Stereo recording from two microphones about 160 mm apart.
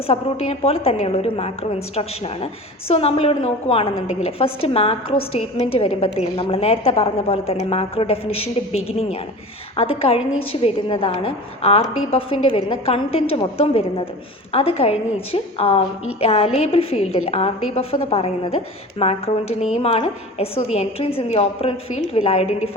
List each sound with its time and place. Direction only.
0.1 s a woman's voice: 40° left (ahead or behind)